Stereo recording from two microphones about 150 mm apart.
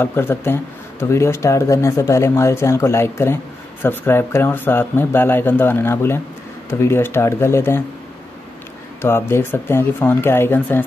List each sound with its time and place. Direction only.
0.0 s speech: 15° left (ahead or behind)
9.0 s speech: 15° left (ahead or behind)